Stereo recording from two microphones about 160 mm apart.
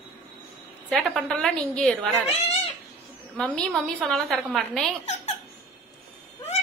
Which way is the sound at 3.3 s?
5° left (ahead or behind).